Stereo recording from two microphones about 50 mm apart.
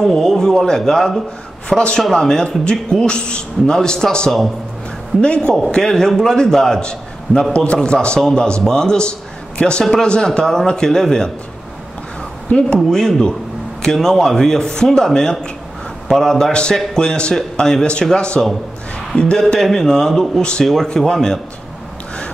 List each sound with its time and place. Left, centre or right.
0.0 s a man's voice: centre
7.5 s a man's voice: left
8.2 s a man's voice: centre
12.5 s a man's voice: centre
19.1 s a man's voice: left
19.6 s a man's voice: centre